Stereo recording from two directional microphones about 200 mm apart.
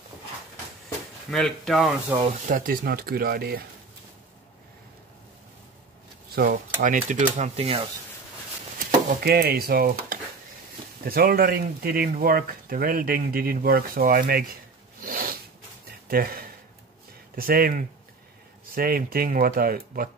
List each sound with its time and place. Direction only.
1.3 s speech: centre (ahead or behind)
2.4 s speech: 45° right (ahead or behind)
6.3 s speech: 45° right (ahead or behind)
8.7 s speech: 50° right (ahead or behind)